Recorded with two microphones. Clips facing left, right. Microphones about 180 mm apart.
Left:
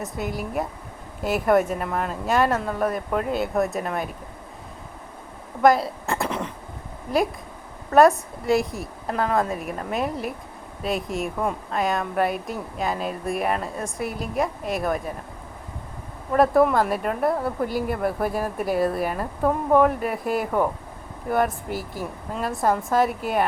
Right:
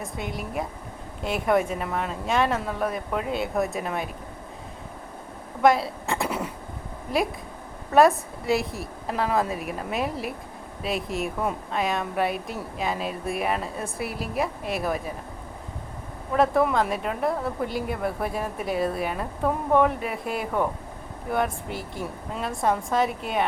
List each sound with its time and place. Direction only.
0.0 s a woman's voice: centre (ahead or behind)
5.6 s a sound: centre (ahead or behind)
7.9 s a woman's voice: centre (ahead or behind)
16.3 s a woman's voice: 5° left (ahead or behind)